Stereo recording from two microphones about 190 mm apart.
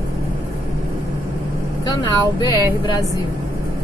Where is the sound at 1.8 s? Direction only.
20° left (ahead or behind).